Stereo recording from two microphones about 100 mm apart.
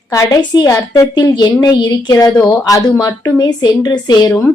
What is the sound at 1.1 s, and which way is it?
A woman's voice, 50° left (ahead or behind).